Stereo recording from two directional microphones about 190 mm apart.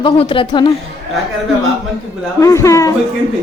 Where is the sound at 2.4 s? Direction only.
15° left (ahead or behind).